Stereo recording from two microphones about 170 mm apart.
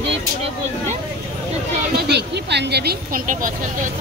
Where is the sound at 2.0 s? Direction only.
80° right.